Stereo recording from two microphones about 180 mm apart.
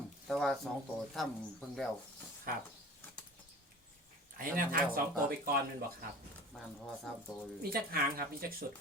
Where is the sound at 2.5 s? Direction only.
55° right (ahead or behind).